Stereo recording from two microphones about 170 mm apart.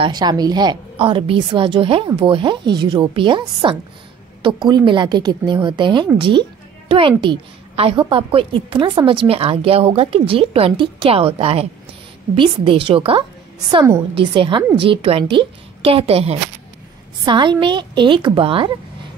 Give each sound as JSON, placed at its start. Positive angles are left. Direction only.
{"t": 0.0, "sound": "a woman's voice", "side_deg": -25}